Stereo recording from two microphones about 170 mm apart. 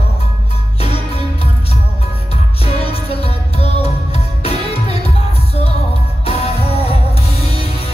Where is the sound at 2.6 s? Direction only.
35° left (ahead or behind).